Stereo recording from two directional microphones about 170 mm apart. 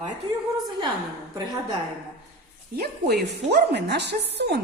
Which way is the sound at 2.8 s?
75° right (ahead or behind).